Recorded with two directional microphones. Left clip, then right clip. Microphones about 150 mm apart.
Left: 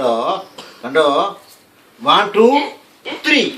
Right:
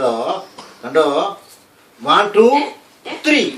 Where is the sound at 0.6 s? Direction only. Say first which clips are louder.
Left 1 dB; 5° left (ahead or behind).